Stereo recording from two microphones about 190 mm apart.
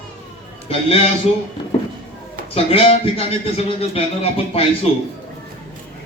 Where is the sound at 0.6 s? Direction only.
30° left (ahead or behind).